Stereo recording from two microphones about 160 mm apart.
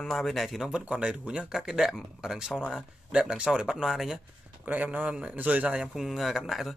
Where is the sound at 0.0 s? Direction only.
Centre (ahead or behind).